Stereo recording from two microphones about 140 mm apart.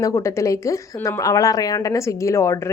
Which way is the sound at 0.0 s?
20° left (ahead or behind).